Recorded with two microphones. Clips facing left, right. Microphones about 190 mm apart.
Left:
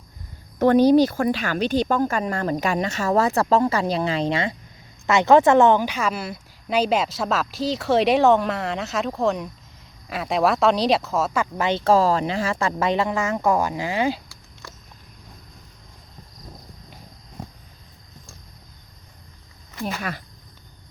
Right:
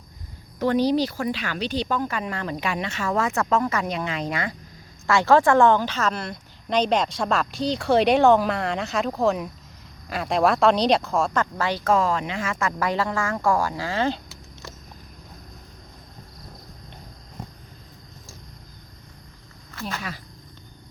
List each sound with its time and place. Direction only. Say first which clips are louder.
0.6 s a woman's voice: left 6 dB; 50° left (ahead or behind); by 11.4 s 5° left (ahead or behind)
11.5 s speech: left 6 dB; 20° left (ahead or behind)
19.8 s speech: left 4 dB; 55° left (ahead or behind)